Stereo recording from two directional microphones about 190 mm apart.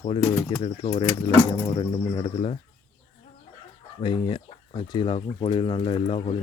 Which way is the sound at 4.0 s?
25° left (ahead or behind).